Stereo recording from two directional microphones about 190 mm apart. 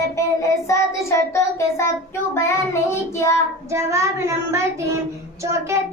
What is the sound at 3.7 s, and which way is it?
A child's voice, 15° right (ahead or behind).